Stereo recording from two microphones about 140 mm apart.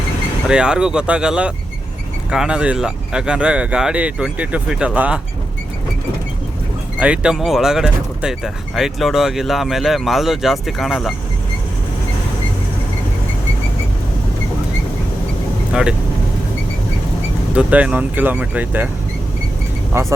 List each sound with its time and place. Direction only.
0.4 s speech: 5° right (ahead or behind)
7.0 s speech: 10° right (ahead or behind)
15.7 s speech: 5° right (ahead or behind)
17.5 s speech: 10° right (ahead or behind)
19.9 s speech: 20° right (ahead or behind)